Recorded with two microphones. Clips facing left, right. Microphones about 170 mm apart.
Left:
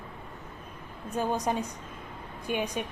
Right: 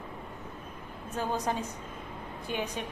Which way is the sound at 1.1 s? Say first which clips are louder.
Left 3 dB; 15° left (ahead or behind).